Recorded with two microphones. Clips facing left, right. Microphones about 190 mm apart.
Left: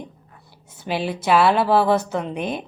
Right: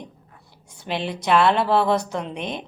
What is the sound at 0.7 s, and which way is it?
Speech, 5° left (ahead or behind).